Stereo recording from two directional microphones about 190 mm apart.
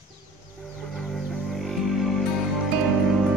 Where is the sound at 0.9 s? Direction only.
Centre (ahead or behind).